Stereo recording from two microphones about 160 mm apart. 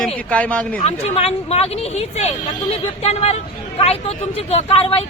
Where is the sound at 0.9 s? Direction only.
40° left (ahead or behind).